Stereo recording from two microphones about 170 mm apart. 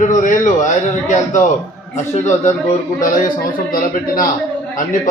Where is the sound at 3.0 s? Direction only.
50° left (ahead or behind).